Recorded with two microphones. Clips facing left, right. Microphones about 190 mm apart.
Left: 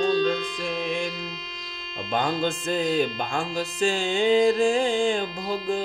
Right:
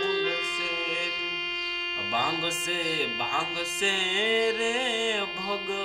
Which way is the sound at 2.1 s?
50° left (ahead or behind).